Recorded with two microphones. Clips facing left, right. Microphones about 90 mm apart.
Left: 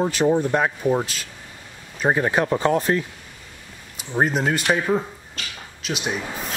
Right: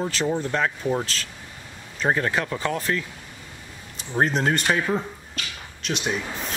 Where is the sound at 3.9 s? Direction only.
5° left (ahead or behind).